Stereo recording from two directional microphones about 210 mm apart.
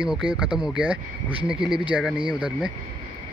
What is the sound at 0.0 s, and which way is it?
Speech, 5° right (ahead or behind).